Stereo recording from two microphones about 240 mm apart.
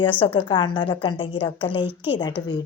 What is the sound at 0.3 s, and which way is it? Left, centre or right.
A woman's voice, centre.